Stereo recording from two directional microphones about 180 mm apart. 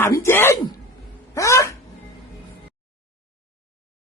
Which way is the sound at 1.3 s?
15° left (ahead or behind).